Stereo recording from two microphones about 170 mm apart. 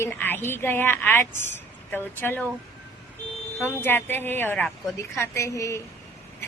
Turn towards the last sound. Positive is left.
turn(degrees=20)  # may be behind; listen again after turning